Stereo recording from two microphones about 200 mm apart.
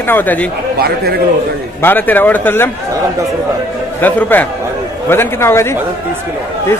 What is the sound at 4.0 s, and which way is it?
Speech, 10° left (ahead or behind).